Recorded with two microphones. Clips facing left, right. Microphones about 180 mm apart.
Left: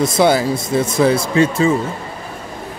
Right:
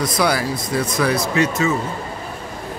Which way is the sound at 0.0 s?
25° left (ahead or behind).